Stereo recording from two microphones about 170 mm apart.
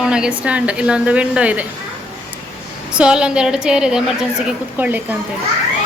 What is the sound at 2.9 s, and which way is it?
A woman's voice, 5° right (ahead or behind).